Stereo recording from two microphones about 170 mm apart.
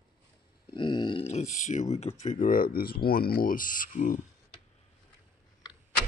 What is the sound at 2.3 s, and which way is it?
Speech, 55° left (ahead or behind).